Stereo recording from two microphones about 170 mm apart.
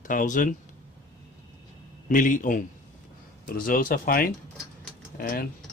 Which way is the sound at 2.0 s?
50° left (ahead or behind).